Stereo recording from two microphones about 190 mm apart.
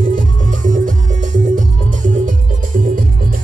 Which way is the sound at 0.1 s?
40° right (ahead or behind).